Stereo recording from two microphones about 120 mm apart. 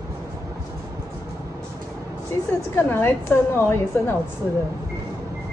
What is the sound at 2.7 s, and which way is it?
A woman's voice, 20° left (ahead or behind).